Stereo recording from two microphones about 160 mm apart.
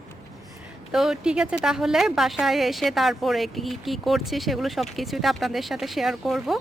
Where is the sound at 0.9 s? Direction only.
5° right (ahead or behind).